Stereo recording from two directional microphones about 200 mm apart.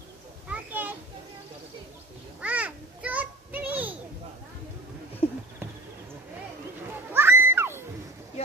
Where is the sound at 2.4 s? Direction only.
5° right (ahead or behind).